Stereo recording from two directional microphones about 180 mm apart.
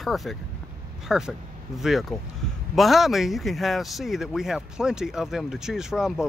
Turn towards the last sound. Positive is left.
turn(degrees=0)  # may be behind; listen again after turning